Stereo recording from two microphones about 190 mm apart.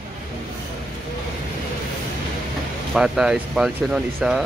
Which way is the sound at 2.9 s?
5° right (ahead or behind).